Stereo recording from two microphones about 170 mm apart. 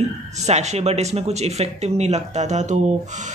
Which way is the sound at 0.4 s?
40° right (ahead or behind).